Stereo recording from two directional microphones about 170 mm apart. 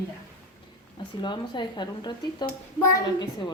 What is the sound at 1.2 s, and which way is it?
A child's voice, 25° left (ahead or behind).